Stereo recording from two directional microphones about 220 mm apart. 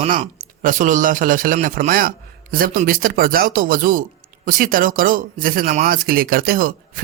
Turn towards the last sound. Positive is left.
turn(degrees=-40)  # may be behind; listen again after turning